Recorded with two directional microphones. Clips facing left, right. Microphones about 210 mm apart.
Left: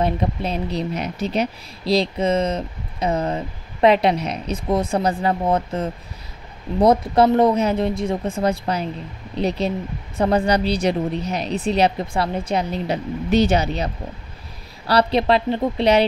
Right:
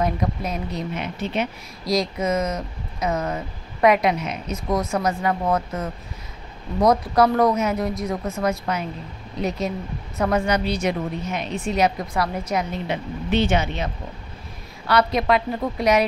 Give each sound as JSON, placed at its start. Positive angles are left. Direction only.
{"t": 0.0, "sound": "a woman's voice", "side_deg": 30}
{"t": 14.9, "sound": "speech", "side_deg": 30}